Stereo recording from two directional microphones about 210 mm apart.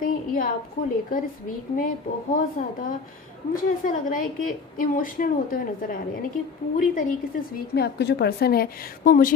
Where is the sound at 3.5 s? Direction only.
40° left (ahead or behind).